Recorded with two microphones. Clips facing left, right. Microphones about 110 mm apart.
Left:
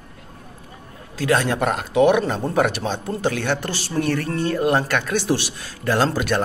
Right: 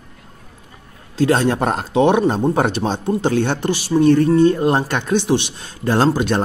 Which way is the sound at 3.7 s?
15° right (ahead or behind).